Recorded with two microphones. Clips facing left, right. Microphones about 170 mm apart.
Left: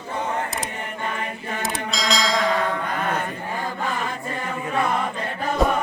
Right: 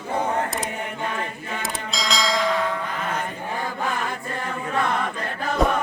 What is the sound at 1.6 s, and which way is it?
Bell, centre (ahead or behind).